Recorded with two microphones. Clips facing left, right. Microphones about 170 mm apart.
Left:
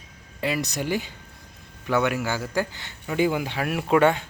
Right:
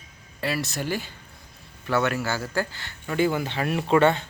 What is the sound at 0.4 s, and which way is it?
Speech, 15° left (ahead or behind).